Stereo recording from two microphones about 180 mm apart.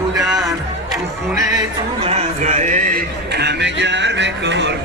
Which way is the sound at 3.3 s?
70° right (ahead or behind).